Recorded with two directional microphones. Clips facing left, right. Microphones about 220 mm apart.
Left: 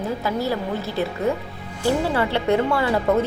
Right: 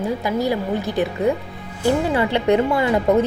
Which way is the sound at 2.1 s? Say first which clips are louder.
Right 3 dB; 15° right (ahead or behind).